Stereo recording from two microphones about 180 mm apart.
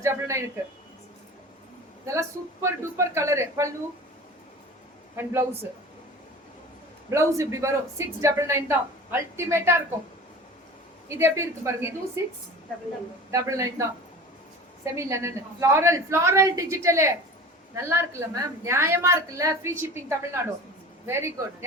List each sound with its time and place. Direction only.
0.0 s a man's voice: 15° right (ahead or behind)
2.0 s a woman's voice: 15° right (ahead or behind)
5.1 s a woman's voice: 15° right (ahead or behind)
7.1 s a woman's voice: 15° right (ahead or behind)
11.1 s a woman's voice: 15° right (ahead or behind)
13.3 s a woman's voice: 15° right (ahead or behind)
14.9 s a woman's voice: 15° right (ahead or behind)